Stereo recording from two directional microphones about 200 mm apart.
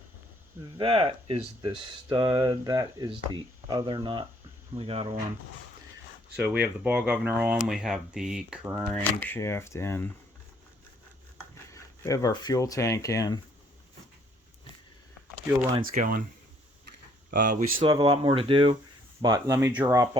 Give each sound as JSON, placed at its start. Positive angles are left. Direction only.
{"t": 0.8, "sound": "speech", "side_deg": -25}
{"t": 6.3, "sound": "speech", "side_deg": -10}
{"t": 8.9, "sound": "speech", "side_deg": 10}
{"t": 11.7, "sound": "speech", "side_deg": 15}
{"t": 15.9, "sound": "speech", "side_deg": -45}
{"t": 17.3, "sound": "speech", "side_deg": -40}
{"t": 17.8, "sound": "speech", "side_deg": -20}